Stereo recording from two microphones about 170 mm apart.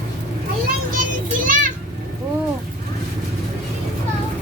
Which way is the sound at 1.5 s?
50° right (ahead or behind).